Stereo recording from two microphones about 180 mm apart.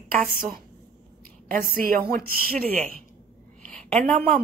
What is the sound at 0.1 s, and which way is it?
A woman's voice, 50° right (ahead or behind).